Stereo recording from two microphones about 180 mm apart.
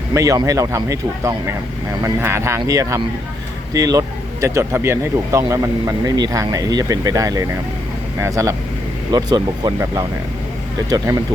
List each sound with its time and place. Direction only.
0.1 s speech: 20° right (ahead or behind)